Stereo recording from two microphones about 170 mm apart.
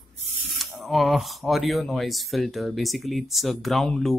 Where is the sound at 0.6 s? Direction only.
Centre (ahead or behind).